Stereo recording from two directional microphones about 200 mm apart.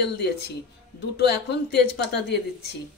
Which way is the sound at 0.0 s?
55° left (ahead or behind).